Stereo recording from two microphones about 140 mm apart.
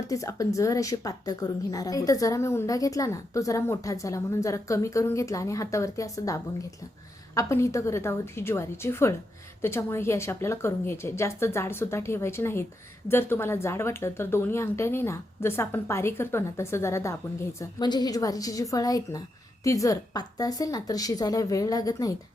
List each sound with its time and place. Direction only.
0.1 s speech: 25° left (ahead or behind)
17.6 s speech: 30° left (ahead or behind)